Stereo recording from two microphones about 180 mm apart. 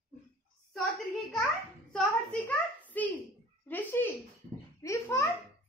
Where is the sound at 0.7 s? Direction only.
Centre (ahead or behind).